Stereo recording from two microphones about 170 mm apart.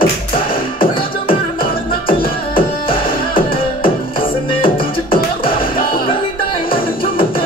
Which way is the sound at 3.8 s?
30° left (ahead or behind).